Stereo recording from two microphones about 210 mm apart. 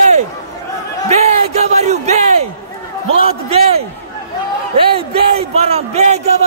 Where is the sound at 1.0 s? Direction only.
30° right (ahead or behind).